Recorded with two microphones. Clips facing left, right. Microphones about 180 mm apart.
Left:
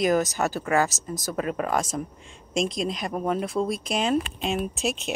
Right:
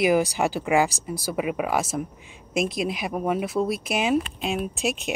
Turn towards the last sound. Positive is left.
turn(degrees=-5)  # may be behind; listen again after turning